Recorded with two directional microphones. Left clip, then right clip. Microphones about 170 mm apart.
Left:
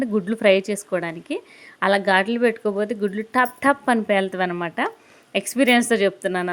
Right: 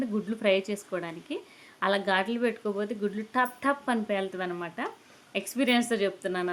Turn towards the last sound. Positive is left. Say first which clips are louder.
# left 8 dB
turn(degrees=40)  # may be behind; listen again after turning